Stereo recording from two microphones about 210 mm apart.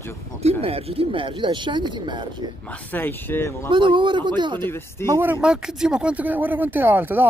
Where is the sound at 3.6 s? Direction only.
20° right (ahead or behind).